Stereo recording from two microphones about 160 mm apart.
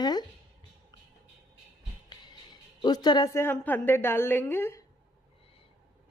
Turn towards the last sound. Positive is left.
turn(degrees=15)  # may be behind; listen again after turning